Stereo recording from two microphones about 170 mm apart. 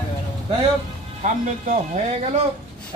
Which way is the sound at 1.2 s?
45° right (ahead or behind).